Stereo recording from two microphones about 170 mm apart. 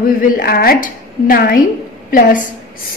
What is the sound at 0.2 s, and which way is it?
A woman's voice, 60° left (ahead or behind).